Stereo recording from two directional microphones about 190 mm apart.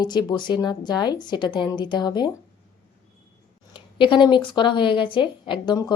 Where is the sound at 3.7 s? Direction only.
25° left (ahead or behind).